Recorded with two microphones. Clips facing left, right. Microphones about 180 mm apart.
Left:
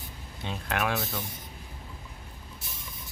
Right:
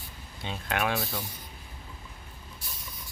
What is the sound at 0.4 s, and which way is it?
Speech, centre (ahead or behind).